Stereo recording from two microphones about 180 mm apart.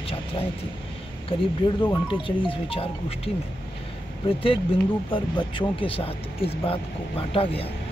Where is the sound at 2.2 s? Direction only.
30° left (ahead or behind).